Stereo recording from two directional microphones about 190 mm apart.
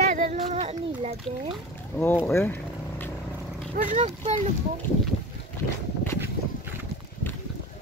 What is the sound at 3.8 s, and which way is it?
Speech, 40° right (ahead or behind).